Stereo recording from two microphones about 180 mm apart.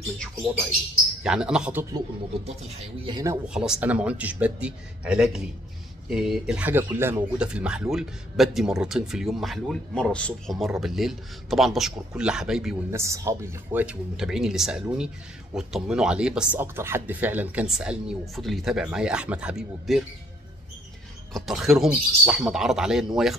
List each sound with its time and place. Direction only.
1.2 s speech: 5° right (ahead or behind)
2.4 s speech: 35° right (ahead or behind)
3.4 s speech: 5° right (ahead or behind)
12.9 s speech: 15° right (ahead or behind)
21.3 s speech: centre (ahead or behind)